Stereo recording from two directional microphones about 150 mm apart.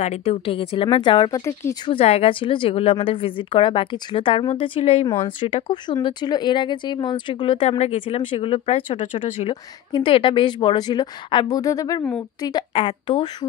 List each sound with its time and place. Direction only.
0.0 s speech: 45° left (ahead or behind)
1.4 s a woman's voice: 20° left (ahead or behind)
1.9 s speech: 40° left (ahead or behind)
9.5 s a woman's voice: 35° left (ahead or behind)
12.5 s speech: 35° left (ahead or behind)